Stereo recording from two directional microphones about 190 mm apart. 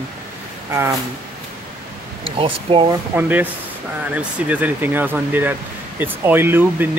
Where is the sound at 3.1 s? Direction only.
10° right (ahead or behind).